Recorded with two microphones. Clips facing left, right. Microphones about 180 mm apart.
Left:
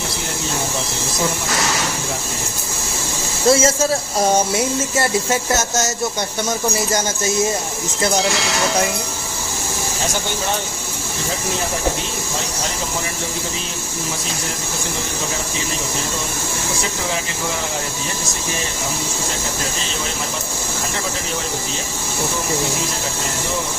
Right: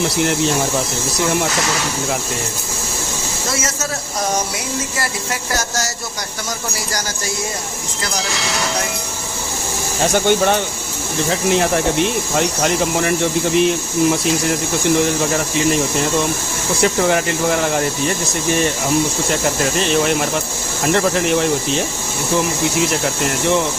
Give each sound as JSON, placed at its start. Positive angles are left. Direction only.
{"t": 3.5, "sound": "speech", "side_deg": 30}
{"t": 11.3, "sound": "speech", "side_deg": -70}
{"t": 16.8, "sound": "speech", "side_deg": -65}
{"t": 19.8, "sound": "speech", "side_deg": -65}